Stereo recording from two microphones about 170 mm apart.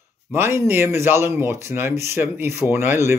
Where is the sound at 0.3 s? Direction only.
15° right (ahead or behind).